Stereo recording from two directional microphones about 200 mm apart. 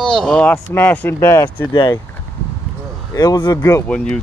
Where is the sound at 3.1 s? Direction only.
20° left (ahead or behind).